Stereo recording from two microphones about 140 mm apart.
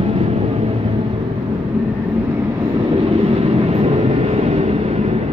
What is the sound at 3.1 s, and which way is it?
Vehicle, 45° right (ahead or behind).